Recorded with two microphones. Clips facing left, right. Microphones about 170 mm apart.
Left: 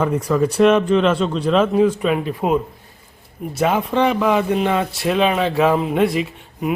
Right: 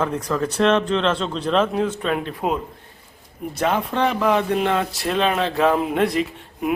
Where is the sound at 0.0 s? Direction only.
10° left (ahead or behind).